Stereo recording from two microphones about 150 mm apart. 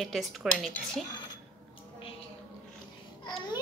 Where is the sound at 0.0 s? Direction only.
Centre (ahead or behind).